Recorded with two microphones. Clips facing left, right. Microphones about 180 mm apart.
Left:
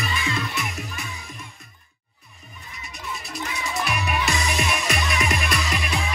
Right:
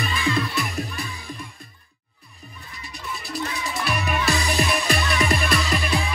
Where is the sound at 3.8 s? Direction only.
30° right (ahead or behind).